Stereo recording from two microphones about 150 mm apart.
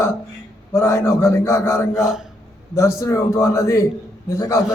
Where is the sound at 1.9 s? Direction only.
5° right (ahead or behind).